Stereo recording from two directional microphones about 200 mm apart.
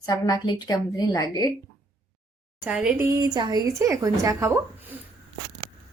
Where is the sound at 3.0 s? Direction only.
15° right (ahead or behind).